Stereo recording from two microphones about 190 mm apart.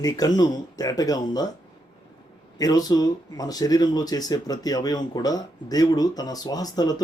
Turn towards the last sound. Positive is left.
turn(degrees=20)  # may be behind; listen again after turning